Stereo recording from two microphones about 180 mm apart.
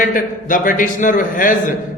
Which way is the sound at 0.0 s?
50° left (ahead or behind).